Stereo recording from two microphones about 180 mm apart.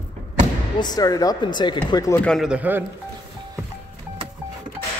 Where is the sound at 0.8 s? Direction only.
20° left (ahead or behind).